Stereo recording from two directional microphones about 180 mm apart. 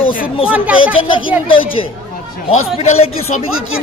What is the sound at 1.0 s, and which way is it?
Speech, 30° left (ahead or behind).